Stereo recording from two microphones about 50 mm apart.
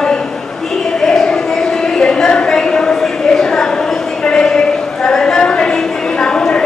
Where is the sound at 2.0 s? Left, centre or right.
Centre.